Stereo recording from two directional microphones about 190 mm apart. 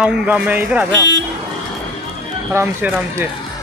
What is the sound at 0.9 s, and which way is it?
Speech, 70° right (ahead or behind).